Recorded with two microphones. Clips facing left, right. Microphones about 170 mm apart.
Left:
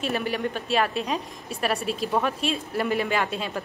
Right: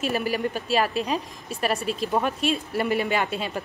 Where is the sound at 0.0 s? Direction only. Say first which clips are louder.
Right 1 dB; 5° right (ahead or behind).